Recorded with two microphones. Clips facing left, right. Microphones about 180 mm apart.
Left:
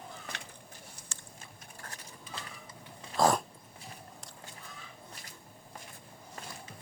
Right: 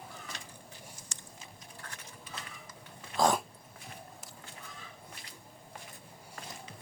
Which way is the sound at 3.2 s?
Centre (ahead or behind).